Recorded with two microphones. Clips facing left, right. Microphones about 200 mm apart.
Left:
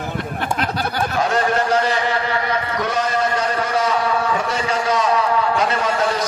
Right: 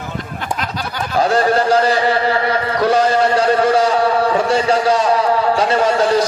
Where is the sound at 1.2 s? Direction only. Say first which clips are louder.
Right 6 dB; 35° right (ahead or behind).